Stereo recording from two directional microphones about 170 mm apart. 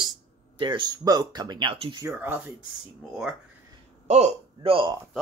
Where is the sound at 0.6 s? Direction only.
25° right (ahead or behind).